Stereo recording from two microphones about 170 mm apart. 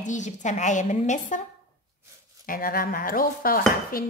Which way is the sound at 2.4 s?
55° left (ahead or behind).